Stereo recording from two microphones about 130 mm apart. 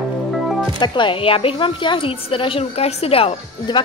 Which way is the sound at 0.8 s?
40° left (ahead or behind).